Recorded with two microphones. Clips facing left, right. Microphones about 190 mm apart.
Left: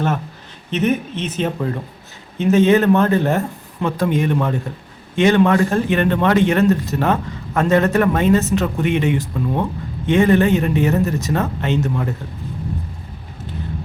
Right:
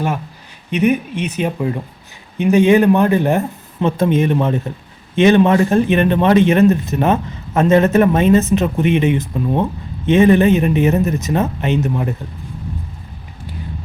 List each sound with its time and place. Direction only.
0.7 s a man's voice: 10° right (ahead or behind)